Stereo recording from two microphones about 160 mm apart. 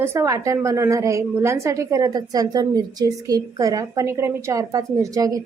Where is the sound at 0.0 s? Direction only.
15° right (ahead or behind).